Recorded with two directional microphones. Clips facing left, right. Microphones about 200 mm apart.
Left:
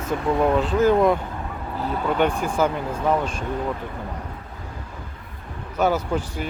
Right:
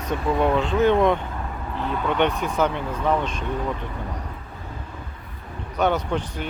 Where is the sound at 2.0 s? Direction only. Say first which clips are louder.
Left 1 dB; 5° left (ahead or behind).